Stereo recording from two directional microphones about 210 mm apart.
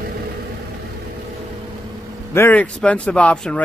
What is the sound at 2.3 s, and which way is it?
Speech, 10° left (ahead or behind).